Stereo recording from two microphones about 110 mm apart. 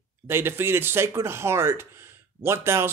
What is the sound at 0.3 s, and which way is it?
Speech, 20° right (ahead or behind).